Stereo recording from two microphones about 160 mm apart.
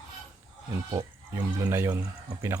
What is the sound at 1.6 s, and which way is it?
Speech, 15° right (ahead or behind).